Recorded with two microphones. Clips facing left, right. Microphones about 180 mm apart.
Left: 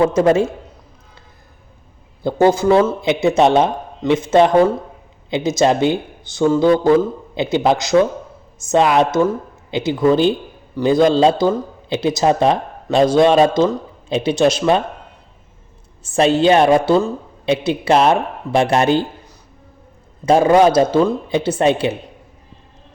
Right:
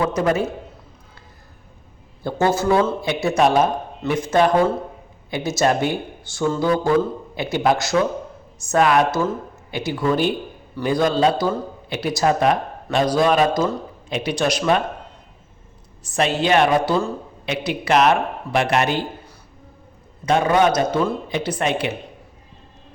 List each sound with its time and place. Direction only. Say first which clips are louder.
0.0 s a man's voice: left 6 dB; 30° left (ahead or behind)
2.2 s a man's voice: left 6 dB; 15° left (ahead or behind)
16.0 s a man's voice: left 6 dB; 30° left (ahead or behind)
20.2 s a man's voice: left 5 dB; 30° left (ahead or behind)